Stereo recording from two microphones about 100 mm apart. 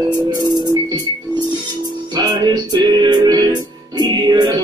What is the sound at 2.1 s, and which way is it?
Music, 45° right (ahead or behind).